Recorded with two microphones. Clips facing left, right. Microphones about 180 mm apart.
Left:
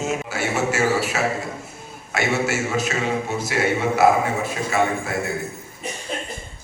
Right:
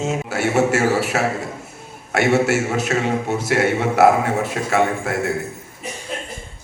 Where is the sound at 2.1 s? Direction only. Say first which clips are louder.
Right 6 dB; 65° right (ahead or behind).